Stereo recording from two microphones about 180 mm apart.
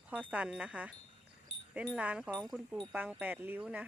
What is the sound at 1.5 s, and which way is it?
Wind chime, 75° right (ahead or behind).